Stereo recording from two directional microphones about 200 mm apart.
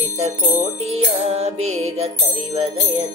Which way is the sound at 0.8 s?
30° right (ahead or behind).